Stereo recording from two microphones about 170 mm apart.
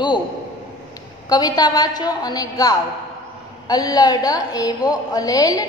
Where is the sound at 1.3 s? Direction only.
25° left (ahead or behind).